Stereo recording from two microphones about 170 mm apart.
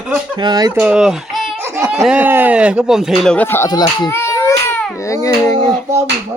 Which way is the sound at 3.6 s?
25° left (ahead or behind).